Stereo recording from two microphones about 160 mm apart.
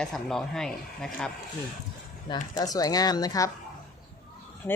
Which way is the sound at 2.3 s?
25° left (ahead or behind).